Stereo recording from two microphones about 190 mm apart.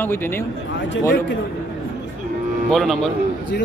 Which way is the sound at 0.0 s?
10° left (ahead or behind).